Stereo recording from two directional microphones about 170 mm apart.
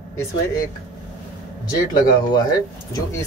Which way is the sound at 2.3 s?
20° left (ahead or behind).